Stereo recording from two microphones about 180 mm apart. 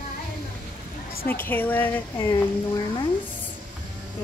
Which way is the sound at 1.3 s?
10° left (ahead or behind).